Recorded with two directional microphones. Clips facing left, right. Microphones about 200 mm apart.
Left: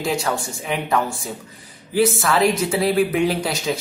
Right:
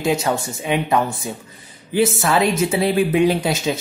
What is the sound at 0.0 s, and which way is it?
Speech, 20° right (ahead or behind).